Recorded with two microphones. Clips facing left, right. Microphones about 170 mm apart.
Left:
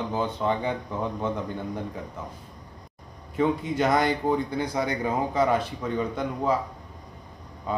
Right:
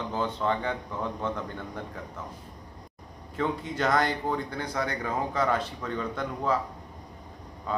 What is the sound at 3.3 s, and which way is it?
Speech, 15° left (ahead or behind).